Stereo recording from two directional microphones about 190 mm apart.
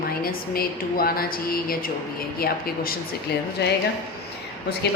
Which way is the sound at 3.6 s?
60° left (ahead or behind).